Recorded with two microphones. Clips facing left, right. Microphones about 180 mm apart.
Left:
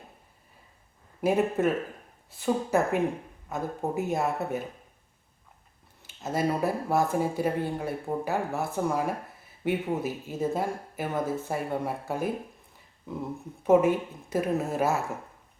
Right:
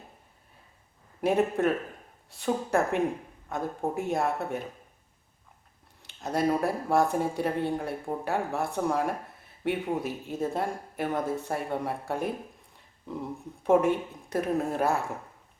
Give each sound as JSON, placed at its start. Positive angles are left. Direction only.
{"t": 1.2, "sound": "speech", "side_deg": 0}
{"t": 6.0, "sound": "speech", "side_deg": 0}
{"t": 13.6, "sound": "speech", "side_deg": 5}